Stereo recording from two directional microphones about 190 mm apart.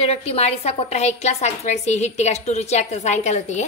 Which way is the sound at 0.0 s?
35° left (ahead or behind).